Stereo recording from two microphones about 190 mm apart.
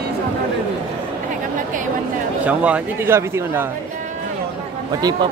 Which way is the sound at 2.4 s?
5° right (ahead or behind).